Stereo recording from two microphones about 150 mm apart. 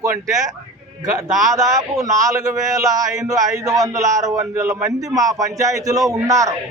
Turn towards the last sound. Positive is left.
turn(degrees=-20)  # may be behind; listen again after turning